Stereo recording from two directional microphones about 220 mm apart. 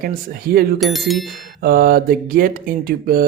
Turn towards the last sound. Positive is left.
turn(degrees=-40)  # may be behind; listen again after turning